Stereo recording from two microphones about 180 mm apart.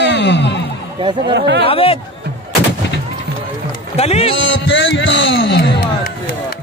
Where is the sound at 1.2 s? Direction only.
75° right (ahead or behind).